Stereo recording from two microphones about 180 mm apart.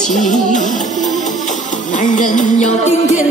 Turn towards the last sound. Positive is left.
turn(degrees=40)  # may be behind; listen again after turning